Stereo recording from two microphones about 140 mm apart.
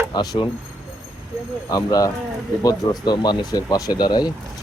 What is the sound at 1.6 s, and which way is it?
Speech, 25° left (ahead or behind).